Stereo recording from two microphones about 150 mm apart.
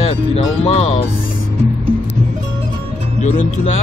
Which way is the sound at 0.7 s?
40° left (ahead or behind).